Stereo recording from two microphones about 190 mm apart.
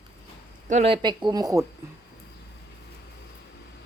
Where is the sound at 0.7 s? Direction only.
30° right (ahead or behind).